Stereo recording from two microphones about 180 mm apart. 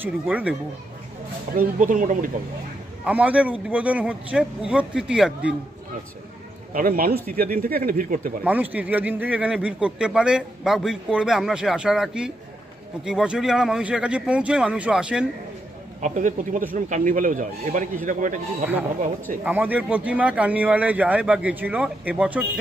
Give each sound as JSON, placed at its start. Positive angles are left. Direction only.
{"t": 0.0, "sound": "a man's voice", "side_deg": -10}
{"t": 1.6, "sound": "speech", "side_deg": -45}
{"t": 3.1, "sound": "a man's voice", "side_deg": -10}
{"t": 6.7, "sound": "a man's voice", "side_deg": -55}
{"t": 8.5, "sound": "a man's voice", "side_deg": -10}
{"t": 16.0, "sound": "speech", "side_deg": -45}
{"t": 19.4, "sound": "a man's voice", "side_deg": -10}